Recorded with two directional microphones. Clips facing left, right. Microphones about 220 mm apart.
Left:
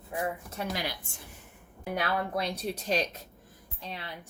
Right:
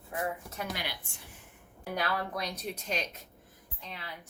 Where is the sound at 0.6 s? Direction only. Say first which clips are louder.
Left 5 dB; 40° left (ahead or behind).